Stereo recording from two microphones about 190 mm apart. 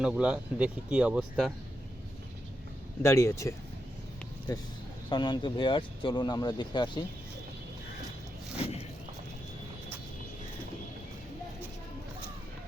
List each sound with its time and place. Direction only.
0.0 s speech: 5° right (ahead or behind)
3.0 s speech: 15° left (ahead or behind)
5.0 s speech: 25° left (ahead or behind)